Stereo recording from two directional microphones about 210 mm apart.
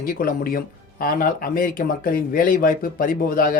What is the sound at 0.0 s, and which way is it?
Speech, 45° left (ahead or behind).